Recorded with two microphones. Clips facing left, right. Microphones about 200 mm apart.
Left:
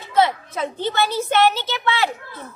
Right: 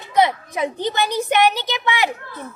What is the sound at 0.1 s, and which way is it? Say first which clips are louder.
A woman's voice: right 1 dB; 15° right (ahead or behind).